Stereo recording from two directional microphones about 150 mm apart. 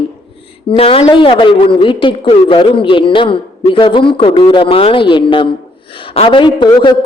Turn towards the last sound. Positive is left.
turn(degrees=30)  # may be behind; listen again after turning